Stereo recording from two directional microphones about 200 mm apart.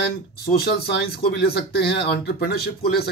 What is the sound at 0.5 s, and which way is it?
A man's voice, 50° left (ahead or behind).